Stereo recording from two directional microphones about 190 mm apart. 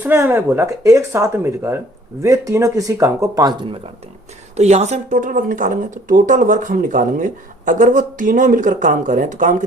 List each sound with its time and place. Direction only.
0.0 s speech: 10° right (ahead or behind)
4.5 s speech: 35° right (ahead or behind)